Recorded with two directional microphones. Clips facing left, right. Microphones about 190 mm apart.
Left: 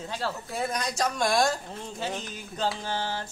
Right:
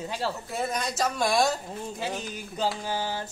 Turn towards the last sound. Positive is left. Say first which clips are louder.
# right 1 dB
turn(degrees=-10)  # may be behind; listen again after turning